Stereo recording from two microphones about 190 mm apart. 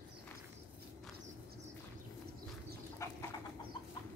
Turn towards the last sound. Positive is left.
turn(degrees=15)  # may be behind; listen again after turning